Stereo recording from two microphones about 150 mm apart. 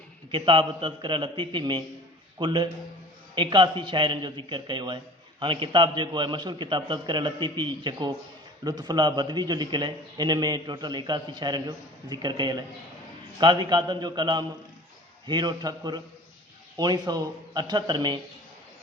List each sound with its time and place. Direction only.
0.3 s a man's voice: 35° right (ahead or behind)